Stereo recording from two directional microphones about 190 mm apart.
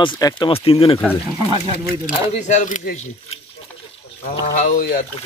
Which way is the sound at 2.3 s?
40° left (ahead or behind).